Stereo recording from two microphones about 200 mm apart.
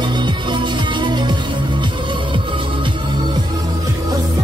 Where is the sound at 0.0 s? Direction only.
25° right (ahead or behind).